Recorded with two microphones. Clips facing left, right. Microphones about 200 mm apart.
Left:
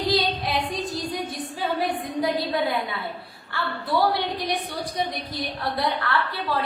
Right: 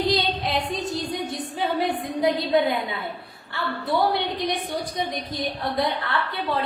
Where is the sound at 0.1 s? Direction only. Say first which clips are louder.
Even; 20° right (ahead or behind).